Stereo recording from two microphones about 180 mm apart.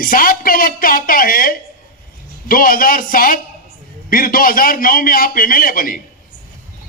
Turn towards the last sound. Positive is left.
turn(degrees=50)  # may be behind; listen again after turning